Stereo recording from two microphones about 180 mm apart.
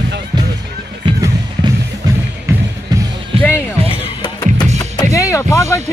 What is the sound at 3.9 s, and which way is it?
Music, 25° left (ahead or behind).